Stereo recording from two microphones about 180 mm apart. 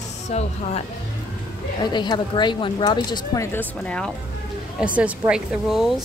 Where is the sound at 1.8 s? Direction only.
25° left (ahead or behind); by 4.1 s 5° left (ahead or behind).